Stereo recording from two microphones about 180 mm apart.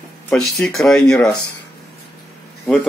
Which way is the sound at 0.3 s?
Centre (ahead or behind).